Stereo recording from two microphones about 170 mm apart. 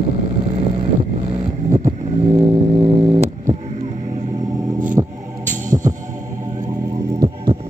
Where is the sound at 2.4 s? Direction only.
35° right (ahead or behind).